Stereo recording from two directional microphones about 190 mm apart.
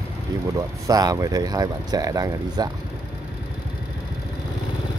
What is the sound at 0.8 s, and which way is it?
Speech, 20° right (ahead or behind).